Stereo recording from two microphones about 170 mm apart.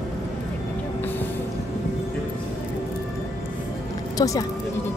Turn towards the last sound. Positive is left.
turn(degrees=20)  # may be behind; listen again after turning